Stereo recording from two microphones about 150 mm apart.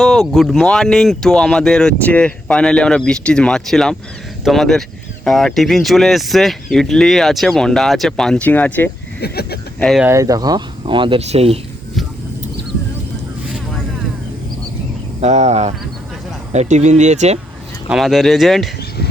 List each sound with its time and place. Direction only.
0.0 s speech: centre (ahead or behind)
9.2 s speech: 90° left
10.0 s speech: 20° right (ahead or behind)
11.2 s speech: 45° right (ahead or behind)
15.2 s speech: 50° right (ahead or behind)
17.8 s speech: centre (ahead or behind)